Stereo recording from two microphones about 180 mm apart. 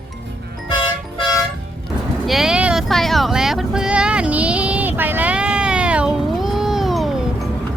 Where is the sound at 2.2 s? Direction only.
Centre (ahead or behind).